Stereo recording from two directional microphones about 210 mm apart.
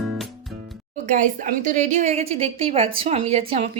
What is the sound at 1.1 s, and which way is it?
A woman's voice, 40° right (ahead or behind).